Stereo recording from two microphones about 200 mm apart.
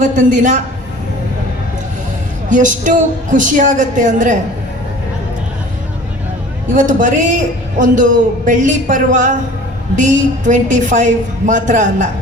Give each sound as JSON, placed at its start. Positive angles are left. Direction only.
{"t": 0.0, "sound": "a man's voice", "side_deg": -40}
{"t": 2.5, "sound": "a man's voice", "side_deg": -40}
{"t": 6.7, "sound": "a man's voice", "side_deg": -40}